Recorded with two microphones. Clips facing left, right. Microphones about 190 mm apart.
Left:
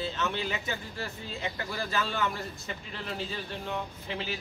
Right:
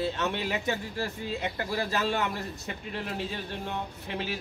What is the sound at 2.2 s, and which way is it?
Speech, 55° right (ahead or behind).